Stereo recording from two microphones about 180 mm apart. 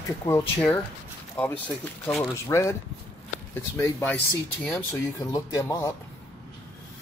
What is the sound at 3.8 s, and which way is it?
Speech, 10° left (ahead or behind).